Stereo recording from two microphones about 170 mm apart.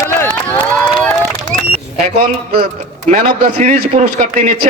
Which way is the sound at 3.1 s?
45° right (ahead or behind).